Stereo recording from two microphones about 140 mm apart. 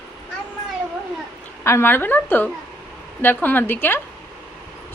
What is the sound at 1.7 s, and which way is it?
A woman's voice, 15° left (ahead or behind).